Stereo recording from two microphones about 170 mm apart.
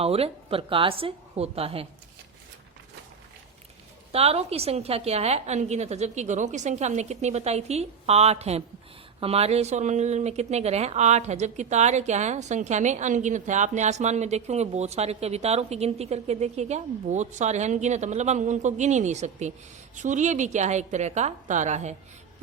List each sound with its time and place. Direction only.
0.0 s a woman's voice: 35° right (ahead or behind)
4.1 s a woman's voice: 35° right (ahead or behind)